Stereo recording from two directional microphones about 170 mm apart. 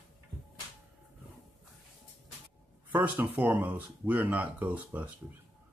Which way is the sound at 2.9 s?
10° right (ahead or behind).